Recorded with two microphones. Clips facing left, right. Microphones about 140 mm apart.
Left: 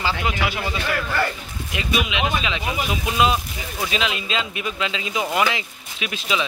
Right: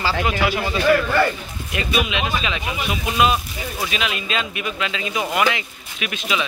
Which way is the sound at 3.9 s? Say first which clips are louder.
Left 2 dB; 25° left (ahead or behind).